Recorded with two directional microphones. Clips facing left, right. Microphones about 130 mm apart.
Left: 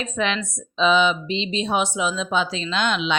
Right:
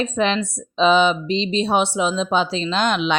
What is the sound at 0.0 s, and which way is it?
Speech, 35° right (ahead or behind).